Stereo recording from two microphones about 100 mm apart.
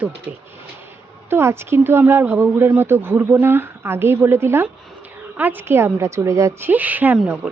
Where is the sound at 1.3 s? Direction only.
25° right (ahead or behind).